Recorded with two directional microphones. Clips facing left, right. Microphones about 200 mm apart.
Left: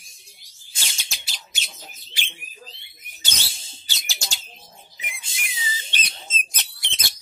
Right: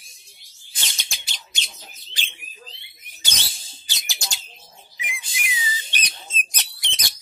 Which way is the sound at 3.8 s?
15° right (ahead or behind).